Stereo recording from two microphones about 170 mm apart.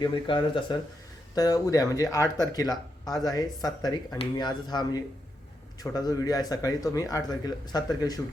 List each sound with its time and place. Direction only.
0.0 s speech: 25° left (ahead or behind)